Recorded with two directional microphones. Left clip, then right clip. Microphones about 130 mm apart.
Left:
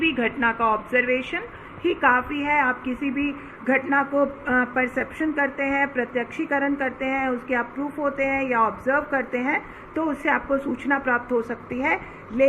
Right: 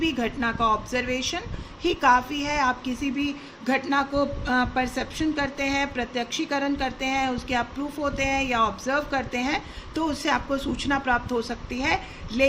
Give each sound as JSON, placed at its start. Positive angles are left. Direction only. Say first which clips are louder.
{"t": 0.0, "sound": "speech", "louder": "left 4 dB", "side_deg": -45}
{"t": 1.8, "sound": "speech", "louder": "even", "side_deg": -60}
{"t": 11.4, "sound": "a woman's voice", "louder": "left 2 dB", "side_deg": -30}